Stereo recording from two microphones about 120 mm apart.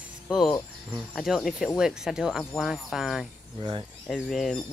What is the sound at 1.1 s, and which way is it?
Speech, 5° left (ahead or behind).